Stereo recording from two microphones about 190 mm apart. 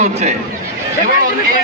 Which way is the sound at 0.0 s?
35° right (ahead or behind).